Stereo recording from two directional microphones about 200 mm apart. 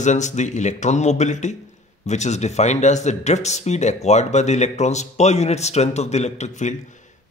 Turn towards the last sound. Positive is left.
turn(degrees=40)  # may be behind; listen again after turning